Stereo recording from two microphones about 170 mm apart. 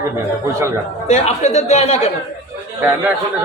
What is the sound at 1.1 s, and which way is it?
Speech, 40° left (ahead or behind).